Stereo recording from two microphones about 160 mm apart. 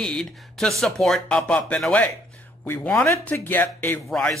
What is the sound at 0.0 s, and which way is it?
Speech, 5° left (ahead or behind).